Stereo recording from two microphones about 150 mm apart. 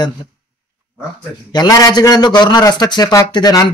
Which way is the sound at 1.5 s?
25° left (ahead or behind).